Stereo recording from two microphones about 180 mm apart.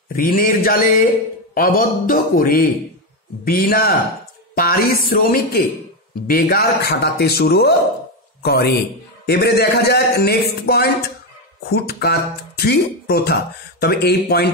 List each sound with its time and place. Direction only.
0.1 s a man's voice: 50° left (ahead or behind)